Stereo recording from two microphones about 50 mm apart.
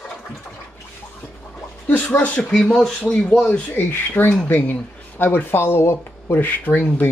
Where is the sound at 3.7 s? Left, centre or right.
Left.